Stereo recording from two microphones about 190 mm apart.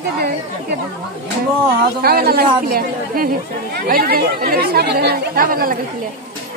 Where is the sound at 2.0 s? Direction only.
55° right (ahead or behind).